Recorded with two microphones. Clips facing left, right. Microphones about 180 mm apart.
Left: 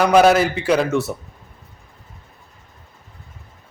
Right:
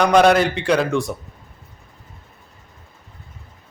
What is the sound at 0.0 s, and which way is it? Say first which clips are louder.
A man's voice: left 1 dB; 5° left (ahead or behind).